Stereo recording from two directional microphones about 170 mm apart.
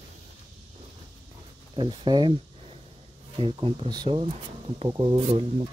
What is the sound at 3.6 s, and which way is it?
Speech, 30° right (ahead or behind).